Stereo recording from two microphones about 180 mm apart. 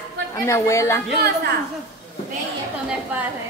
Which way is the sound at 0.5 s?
15° left (ahead or behind).